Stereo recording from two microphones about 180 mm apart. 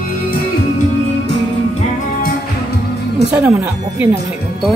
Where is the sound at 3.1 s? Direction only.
15° right (ahead or behind).